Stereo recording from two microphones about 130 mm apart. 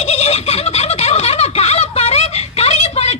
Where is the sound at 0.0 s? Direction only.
55° left (ahead or behind).